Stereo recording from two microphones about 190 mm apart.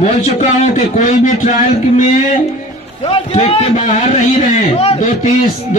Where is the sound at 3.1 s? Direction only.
30° left (ahead or behind).